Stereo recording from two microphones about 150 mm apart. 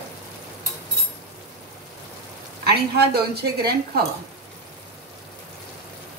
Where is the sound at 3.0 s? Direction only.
90° right.